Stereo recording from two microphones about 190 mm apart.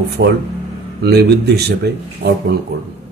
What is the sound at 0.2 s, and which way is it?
Speech, 70° right (ahead or behind).